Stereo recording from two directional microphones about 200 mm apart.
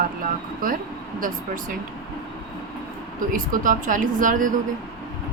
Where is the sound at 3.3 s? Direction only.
40° right (ahead or behind).